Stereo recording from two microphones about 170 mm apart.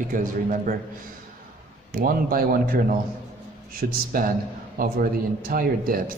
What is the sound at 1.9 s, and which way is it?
Speech, 55° right (ahead or behind).